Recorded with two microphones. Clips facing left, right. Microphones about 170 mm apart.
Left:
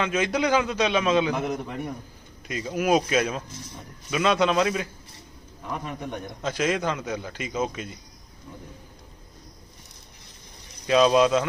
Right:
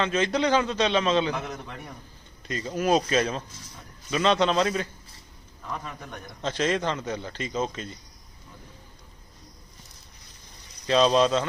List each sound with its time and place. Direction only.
0.0 s a man's voice: 10° left (ahead or behind)
6.4 s a man's voice: 10° left (ahead or behind)
10.8 s a man's voice: 5° left (ahead or behind)